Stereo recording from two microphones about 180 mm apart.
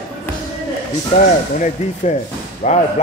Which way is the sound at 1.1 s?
45° left (ahead or behind).